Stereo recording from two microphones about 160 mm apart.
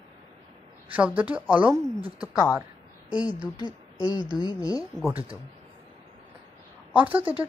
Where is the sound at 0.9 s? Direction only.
10° right (ahead or behind).